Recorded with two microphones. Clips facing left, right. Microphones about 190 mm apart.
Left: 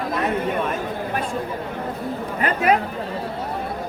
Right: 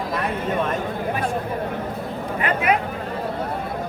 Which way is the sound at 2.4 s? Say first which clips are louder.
Left 2 dB; 40° left (ahead or behind).